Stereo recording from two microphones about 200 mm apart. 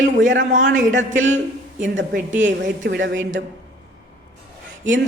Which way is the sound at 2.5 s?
65° right (ahead or behind).